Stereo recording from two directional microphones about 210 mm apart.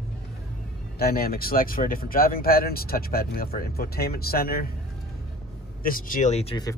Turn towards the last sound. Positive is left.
turn(degrees=25)  # may be behind; listen again after turning